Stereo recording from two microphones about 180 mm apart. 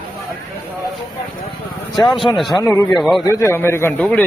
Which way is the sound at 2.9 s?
Centre (ahead or behind).